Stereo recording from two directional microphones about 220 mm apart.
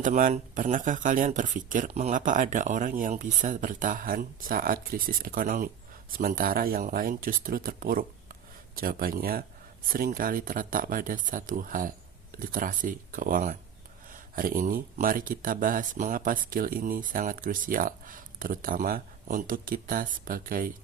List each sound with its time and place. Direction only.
0.0 s speech: 35° right (ahead or behind)